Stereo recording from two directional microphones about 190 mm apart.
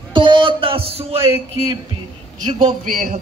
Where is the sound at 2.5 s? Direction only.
45° right (ahead or behind).